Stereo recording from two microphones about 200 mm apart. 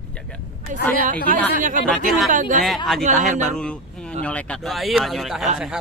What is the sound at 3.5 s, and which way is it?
Speech, 5° left (ahead or behind).